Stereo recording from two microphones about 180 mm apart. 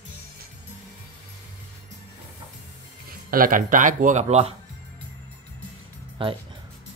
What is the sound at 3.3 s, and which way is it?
A man's voice, 50° right (ahead or behind).